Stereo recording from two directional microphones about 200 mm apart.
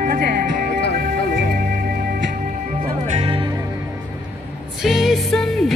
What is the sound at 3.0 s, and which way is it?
Music, 30° right (ahead or behind).